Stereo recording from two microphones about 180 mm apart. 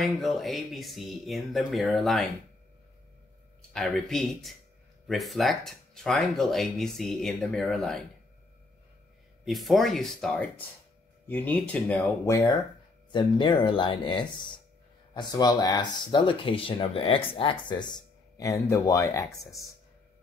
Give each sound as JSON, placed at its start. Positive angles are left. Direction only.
{"t": 0.0, "sound": "speech", "side_deg": 0}
{"t": 3.7, "sound": "speech", "side_deg": 5}
{"t": 9.4, "sound": "speech", "side_deg": 0}